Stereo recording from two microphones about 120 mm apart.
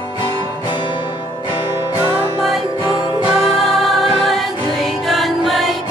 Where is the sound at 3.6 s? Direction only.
Centre (ahead or behind).